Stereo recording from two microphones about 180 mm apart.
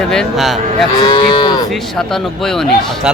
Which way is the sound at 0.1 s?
Centre (ahead or behind).